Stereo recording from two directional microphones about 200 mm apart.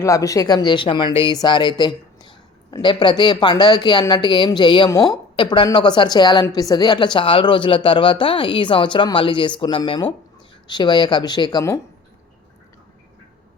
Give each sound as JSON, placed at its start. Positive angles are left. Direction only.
{"t": 0.0, "sound": "speech", "side_deg": 15}